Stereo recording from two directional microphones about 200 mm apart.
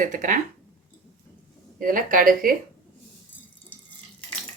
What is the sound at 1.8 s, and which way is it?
Speech, 45° right (ahead or behind).